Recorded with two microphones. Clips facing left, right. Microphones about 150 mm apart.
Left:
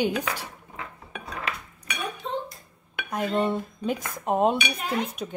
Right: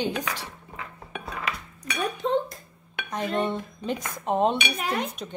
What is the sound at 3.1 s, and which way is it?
Speech, 10° left (ahead or behind).